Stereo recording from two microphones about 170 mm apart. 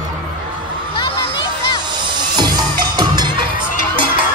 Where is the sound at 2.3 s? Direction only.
25° right (ahead or behind).